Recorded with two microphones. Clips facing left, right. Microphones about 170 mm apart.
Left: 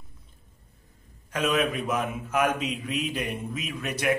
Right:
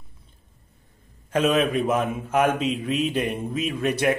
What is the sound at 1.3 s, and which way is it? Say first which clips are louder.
A man's voice: right 5 dB; 25° right (ahead or behind).